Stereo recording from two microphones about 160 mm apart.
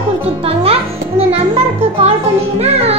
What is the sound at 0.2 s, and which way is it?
Music, 35° right (ahead or behind).